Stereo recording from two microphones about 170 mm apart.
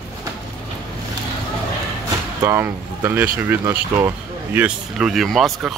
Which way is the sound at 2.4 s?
15° right (ahead or behind).